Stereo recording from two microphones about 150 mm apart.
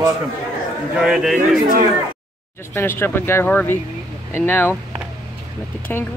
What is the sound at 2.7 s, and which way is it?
Speech, 15° left (ahead or behind).